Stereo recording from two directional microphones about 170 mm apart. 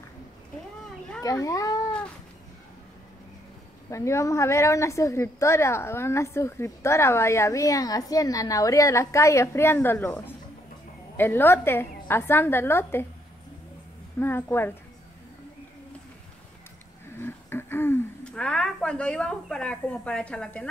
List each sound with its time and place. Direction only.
1.2 s a child's voice: 20° left (ahead or behind)
3.9 s a woman's voice: 15° left (ahead or behind)
14.2 s a woman's voice: 15° left (ahead or behind)
17.1 s throat clearing: 15° left (ahead or behind)